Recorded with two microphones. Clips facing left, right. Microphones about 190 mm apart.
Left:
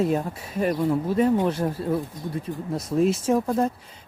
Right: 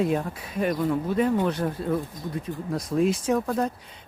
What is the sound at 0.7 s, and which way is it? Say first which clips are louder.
Speech: left 2 dB; 30° left (ahead or behind).